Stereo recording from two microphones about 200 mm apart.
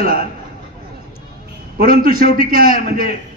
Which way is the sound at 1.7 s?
45° right (ahead or behind).